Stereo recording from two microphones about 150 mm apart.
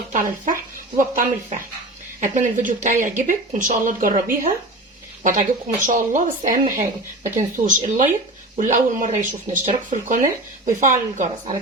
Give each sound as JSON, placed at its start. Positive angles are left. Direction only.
{"t": 0.1, "sound": "speech", "side_deg": -60}